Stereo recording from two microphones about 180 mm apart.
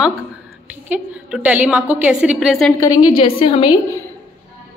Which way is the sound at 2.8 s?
20° left (ahead or behind).